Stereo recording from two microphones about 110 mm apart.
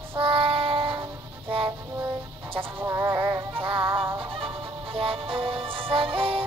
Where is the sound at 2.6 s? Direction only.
25° right (ahead or behind).